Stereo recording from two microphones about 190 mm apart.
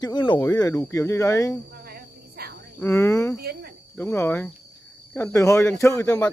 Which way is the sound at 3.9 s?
10° left (ahead or behind).